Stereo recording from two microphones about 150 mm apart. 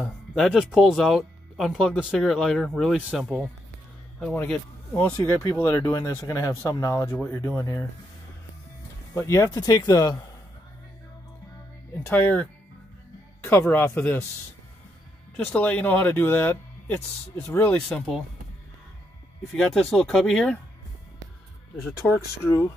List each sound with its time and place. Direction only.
0.0 s speech: centre (ahead or behind)
4.5 s speech: 10° left (ahead or behind)
5.1 s speech: 20° left (ahead or behind)
9.1 s speech: 20° left (ahead or behind)
12.0 s speech: 10° left (ahead or behind)
15.3 s speech: 10° left (ahead or behind)
19.5 s speech: centre (ahead or behind)
22.1 s speech: 15° left (ahead or behind)